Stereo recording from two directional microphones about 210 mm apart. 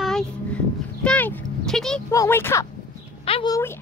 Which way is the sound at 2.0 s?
10° left (ahead or behind).